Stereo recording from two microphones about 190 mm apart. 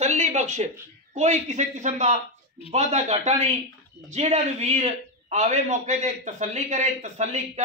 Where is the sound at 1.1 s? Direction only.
35° right (ahead or behind).